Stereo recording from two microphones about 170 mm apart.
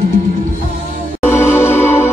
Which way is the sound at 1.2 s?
10° left (ahead or behind).